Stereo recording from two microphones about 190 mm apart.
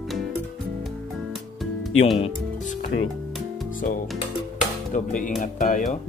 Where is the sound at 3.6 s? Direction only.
45° left (ahead or behind).